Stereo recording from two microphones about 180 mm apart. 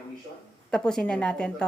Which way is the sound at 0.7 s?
5° left (ahead or behind).